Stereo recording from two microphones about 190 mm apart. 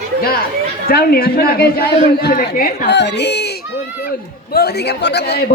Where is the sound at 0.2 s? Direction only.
55° left (ahead or behind).